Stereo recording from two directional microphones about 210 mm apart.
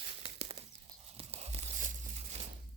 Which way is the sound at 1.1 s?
30° right (ahead or behind).